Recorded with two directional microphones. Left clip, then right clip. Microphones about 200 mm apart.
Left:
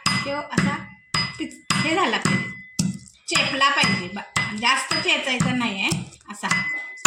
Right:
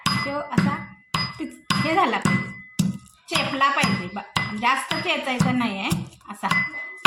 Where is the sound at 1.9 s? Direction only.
10° right (ahead or behind).